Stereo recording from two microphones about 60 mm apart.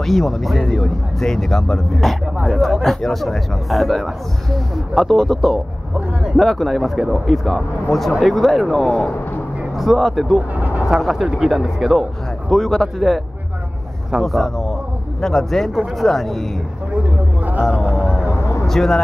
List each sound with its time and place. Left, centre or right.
0.0 s a man's voice: centre
8.8 s speech: centre
9.8 s a man's voice: centre
10.5 s vehicle: right
11.0 s a man's voice: centre
14.2 s a man's voice: centre
18.3 s vehicle: left
18.7 s a man's voice: centre